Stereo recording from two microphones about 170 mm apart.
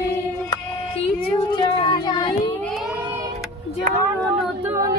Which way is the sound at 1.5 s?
25° left (ahead or behind).